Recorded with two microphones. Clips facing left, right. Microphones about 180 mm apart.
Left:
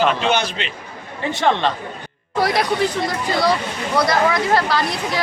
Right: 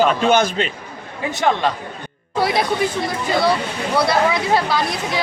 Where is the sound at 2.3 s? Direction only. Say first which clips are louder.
Even; 25° right (ahead or behind).